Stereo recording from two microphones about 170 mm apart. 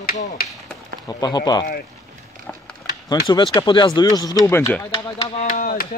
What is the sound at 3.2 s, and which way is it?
Speech, 30° left (ahead or behind).